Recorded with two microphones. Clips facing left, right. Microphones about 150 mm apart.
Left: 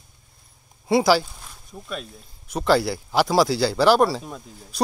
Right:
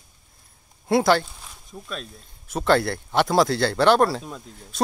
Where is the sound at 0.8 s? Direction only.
Centre (ahead or behind).